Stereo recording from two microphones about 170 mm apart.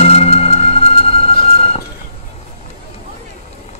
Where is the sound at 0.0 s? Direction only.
35° left (ahead or behind).